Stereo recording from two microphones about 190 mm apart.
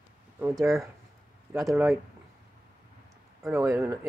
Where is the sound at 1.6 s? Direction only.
Centre (ahead or behind).